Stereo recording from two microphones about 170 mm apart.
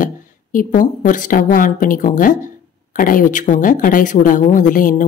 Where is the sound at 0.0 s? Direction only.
55° left (ahead or behind).